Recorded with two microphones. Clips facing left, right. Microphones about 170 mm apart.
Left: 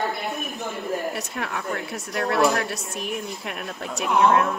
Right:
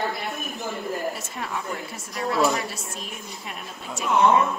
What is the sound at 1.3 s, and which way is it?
Speech, 70° left (ahead or behind).